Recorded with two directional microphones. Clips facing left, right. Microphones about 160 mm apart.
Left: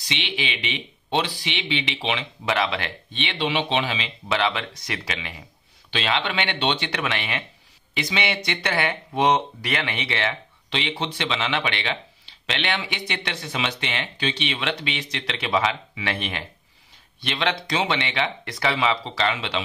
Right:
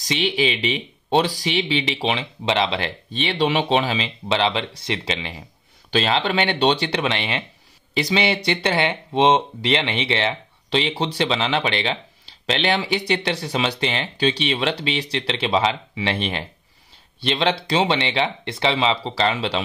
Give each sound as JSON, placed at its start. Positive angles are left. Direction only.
{"t": 0.0, "sound": "speech", "side_deg": -40}
{"t": 2.4, "sound": "speech", "side_deg": -25}